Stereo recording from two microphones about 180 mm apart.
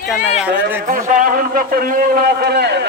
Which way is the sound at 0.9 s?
50° right (ahead or behind).